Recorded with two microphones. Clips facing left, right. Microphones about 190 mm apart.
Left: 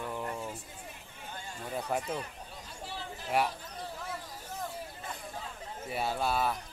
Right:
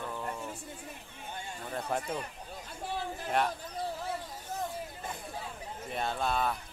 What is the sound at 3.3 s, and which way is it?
Speech, 5° left (ahead or behind).